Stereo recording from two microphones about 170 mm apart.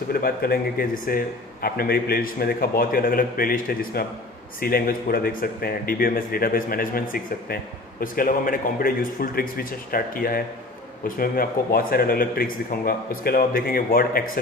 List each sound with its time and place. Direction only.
0.1 s a man's voice: 65° left (ahead or behind)